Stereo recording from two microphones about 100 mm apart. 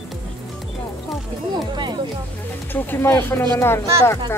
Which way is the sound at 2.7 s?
20° left (ahead or behind).